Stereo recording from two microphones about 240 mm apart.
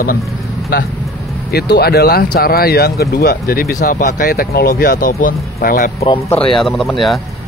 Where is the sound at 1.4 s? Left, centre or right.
Left.